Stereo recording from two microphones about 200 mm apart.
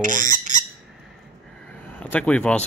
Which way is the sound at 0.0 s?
40° right (ahead or behind).